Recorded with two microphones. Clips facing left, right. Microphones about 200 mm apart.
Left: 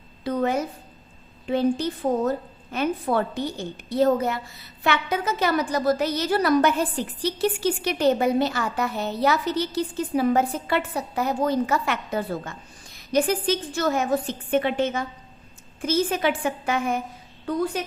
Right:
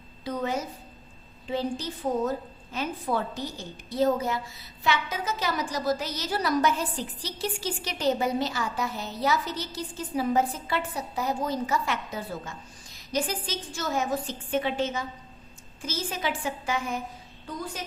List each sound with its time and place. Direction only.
0.3 s a woman's voice: 60° left (ahead or behind)